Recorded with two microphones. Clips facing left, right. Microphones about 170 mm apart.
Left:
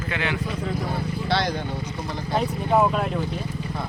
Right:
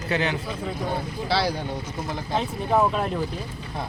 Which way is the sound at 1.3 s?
5° right (ahead or behind).